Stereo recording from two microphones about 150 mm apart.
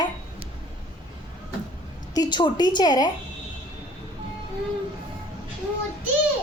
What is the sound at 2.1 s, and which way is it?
A woman's voice, 30° left (ahead or behind).